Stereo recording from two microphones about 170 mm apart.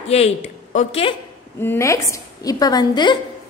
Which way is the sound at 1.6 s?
15° left (ahead or behind).